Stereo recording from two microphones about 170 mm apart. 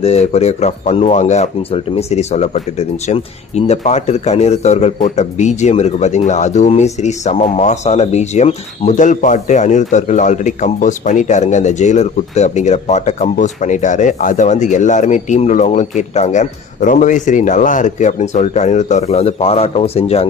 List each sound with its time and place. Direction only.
0.0 s speech: 40° left (ahead or behind)